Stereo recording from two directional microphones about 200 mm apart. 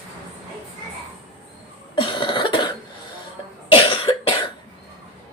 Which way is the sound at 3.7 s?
25° left (ahead or behind).